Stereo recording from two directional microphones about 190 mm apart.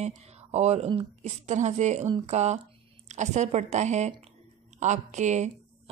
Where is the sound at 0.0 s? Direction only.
35° right (ahead or behind).